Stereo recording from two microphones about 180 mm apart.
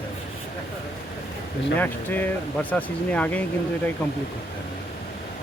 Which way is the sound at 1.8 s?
10° left (ahead or behind).